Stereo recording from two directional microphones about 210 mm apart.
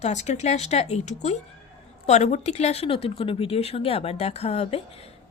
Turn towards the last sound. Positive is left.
turn(degrees=30)  # may be behind; listen again after turning